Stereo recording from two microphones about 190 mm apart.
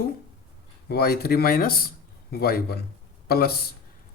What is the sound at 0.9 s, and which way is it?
A man's voice, 55° left (ahead or behind).